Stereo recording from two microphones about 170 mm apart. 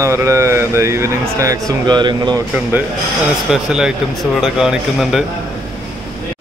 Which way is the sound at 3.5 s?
5° right (ahead or behind).